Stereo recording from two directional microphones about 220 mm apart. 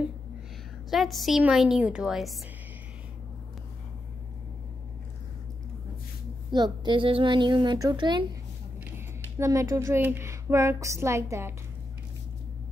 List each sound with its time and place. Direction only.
0.8 s a woman's voice: centre (ahead or behind)
6.5 s speech: 20° right (ahead or behind)